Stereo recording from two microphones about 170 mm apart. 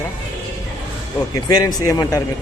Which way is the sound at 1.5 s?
20° left (ahead or behind).